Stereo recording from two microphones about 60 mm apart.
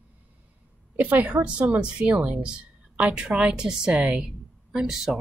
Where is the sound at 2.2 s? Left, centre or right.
Centre.